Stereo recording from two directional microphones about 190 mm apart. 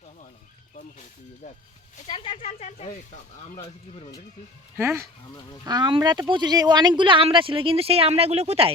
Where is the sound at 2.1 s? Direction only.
25° left (ahead or behind).